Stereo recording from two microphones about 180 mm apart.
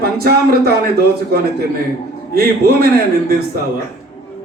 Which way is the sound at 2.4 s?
60° right (ahead or behind).